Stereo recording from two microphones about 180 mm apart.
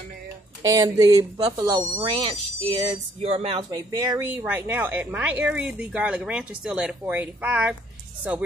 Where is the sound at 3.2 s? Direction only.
35° right (ahead or behind).